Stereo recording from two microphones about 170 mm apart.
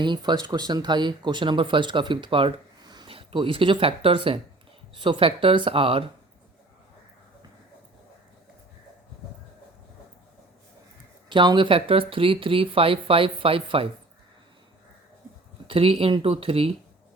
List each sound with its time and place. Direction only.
0.0 s speech: 25° right (ahead or behind)
11.3 s speech: 30° right (ahead or behind)
15.6 s speech: 35° right (ahead or behind)